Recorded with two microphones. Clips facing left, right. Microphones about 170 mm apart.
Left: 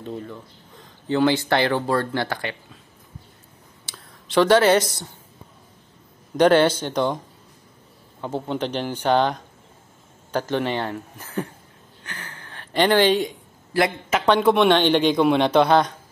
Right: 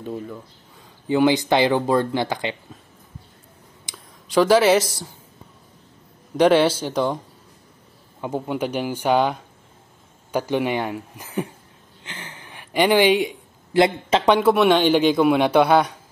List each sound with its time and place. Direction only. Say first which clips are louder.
0.0 s speech: right 2 dB; 10° right (ahead or behind)
3.9 s a sound: right 1 dB; 15° right (ahead or behind)
4.3 s speech: right 1 dB; 5° right (ahead or behind)
6.3 s speech: even; 5° right (ahead or behind)
8.2 s speech: right 1 dB; 10° right (ahead or behind)
12.0 s a sound: right 1 dB; 20° right (ahead or behind)
13.7 s speech: right 4 dB; 25° right (ahead or behind)
14.3 s speech: even; 5° right (ahead or behind)